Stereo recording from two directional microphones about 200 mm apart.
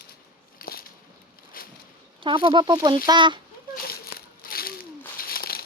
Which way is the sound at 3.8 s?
50° left (ahead or behind).